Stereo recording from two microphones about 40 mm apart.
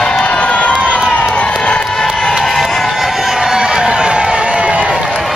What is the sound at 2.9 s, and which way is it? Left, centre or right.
Music, centre.